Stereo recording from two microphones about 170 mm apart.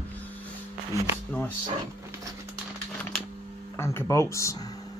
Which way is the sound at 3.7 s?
15° left (ahead or behind).